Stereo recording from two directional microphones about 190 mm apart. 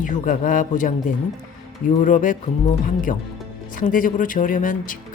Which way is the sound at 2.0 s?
45° left (ahead or behind).